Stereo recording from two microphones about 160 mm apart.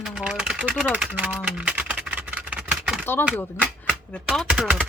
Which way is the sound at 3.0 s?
15° left (ahead or behind).